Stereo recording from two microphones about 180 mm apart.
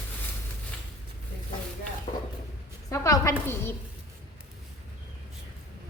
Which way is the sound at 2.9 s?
20° left (ahead or behind).